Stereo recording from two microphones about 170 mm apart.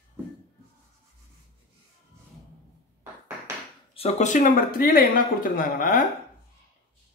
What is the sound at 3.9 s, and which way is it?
Speech, 40° left (ahead or behind).